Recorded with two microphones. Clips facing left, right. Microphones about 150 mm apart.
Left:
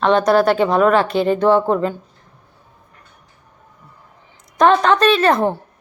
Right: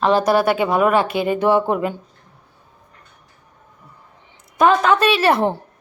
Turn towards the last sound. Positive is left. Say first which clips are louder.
# left 1 dB
turn(degrees=-15)  # may be behind; listen again after turning